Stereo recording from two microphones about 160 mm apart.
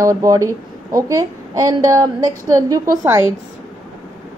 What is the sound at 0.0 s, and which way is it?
A woman's voice, 20° right (ahead or behind).